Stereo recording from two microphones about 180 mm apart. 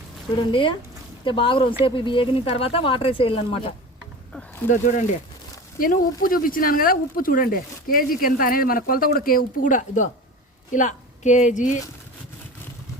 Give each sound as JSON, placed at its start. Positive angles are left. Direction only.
{"t": 0.5, "sound": "speech", "side_deg": 30}
{"t": 4.7, "sound": "speech", "side_deg": 45}